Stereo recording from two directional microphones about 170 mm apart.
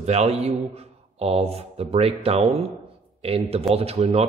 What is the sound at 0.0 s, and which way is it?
Speech, 40° right (ahead or behind).